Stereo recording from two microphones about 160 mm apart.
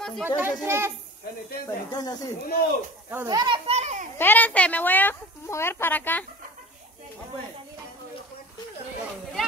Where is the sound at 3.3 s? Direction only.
25° right (ahead or behind).